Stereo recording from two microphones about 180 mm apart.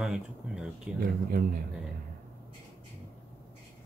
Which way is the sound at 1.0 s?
55° right (ahead or behind).